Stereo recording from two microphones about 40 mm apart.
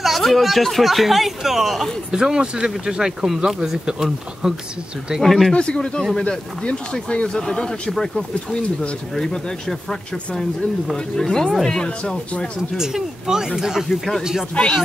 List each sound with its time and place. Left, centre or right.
0.0 s speech: centre
2.1 s speech: centre
5.2 s speech: centre
5.5 s speech: left
7.3 s speech: centre
9.1 s speech: centre
11.1 s speech: centre
12.7 s speech: centre